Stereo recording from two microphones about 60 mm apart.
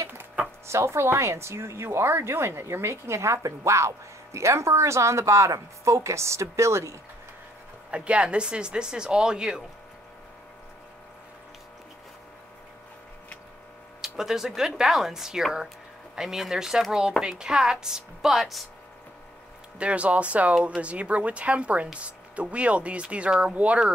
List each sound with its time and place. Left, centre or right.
0.7 s speech: right
7.9 s speech: centre
14.0 s speech: centre
19.8 s speech: right